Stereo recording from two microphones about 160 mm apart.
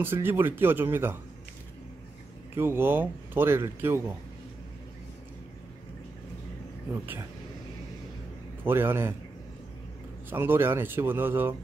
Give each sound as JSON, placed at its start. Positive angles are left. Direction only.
{"t": 0.0, "sound": "a man's voice", "side_deg": -15}
{"t": 2.5, "sound": "a man's voice", "side_deg": -15}
{"t": 6.9, "sound": "a man's voice", "side_deg": -15}
{"t": 8.6, "sound": "a man's voice", "side_deg": -15}
{"t": 10.3, "sound": "a man's voice", "side_deg": -15}